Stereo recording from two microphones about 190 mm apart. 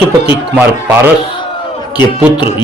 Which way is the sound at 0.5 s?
10° right (ahead or behind).